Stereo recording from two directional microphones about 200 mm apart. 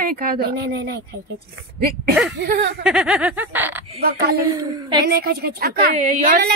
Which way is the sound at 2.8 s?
5° right (ahead or behind).